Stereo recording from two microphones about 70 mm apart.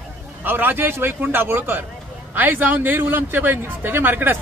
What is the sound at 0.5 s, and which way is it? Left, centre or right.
A man's voice, right.